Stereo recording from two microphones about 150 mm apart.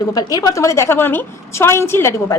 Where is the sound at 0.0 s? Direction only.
25° left (ahead or behind).